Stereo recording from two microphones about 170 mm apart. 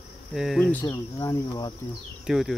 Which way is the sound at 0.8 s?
20° left (ahead or behind).